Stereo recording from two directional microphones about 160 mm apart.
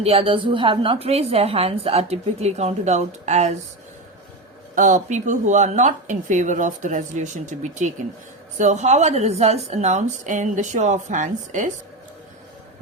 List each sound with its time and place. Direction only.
0.0 s a woman's voice: 35° right (ahead or behind)
4.7 s speech: 50° right (ahead or behind)